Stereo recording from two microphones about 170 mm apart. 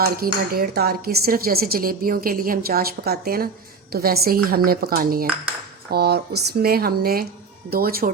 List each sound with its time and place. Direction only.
0.0 s speech: 60° right (ahead or behind)